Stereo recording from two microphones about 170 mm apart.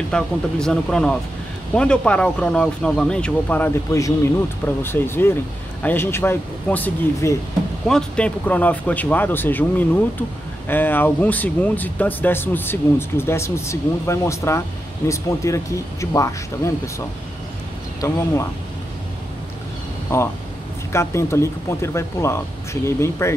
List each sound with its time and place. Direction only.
0.1 s speech: 5° left (ahead or behind)
18.0 s speech: 15° left (ahead or behind)
20.9 s speech: 15° left (ahead or behind)